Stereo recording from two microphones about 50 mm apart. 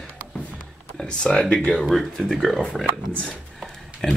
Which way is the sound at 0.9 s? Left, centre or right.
Centre.